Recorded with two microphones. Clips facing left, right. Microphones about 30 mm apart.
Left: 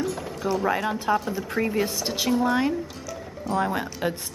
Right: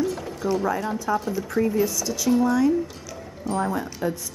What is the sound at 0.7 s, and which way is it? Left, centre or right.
Speech, left.